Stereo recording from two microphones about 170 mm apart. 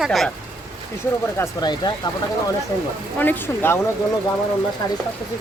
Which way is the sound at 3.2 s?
10° left (ahead or behind).